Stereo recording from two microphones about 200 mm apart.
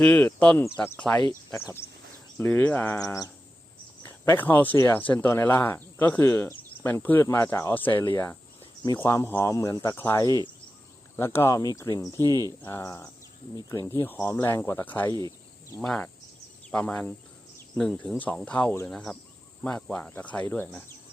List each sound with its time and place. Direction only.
0.0 s speech: 10° left (ahead or behind)
12.1 s speech: 20° right (ahead or behind)
12.6 s speech: 15° left (ahead or behind)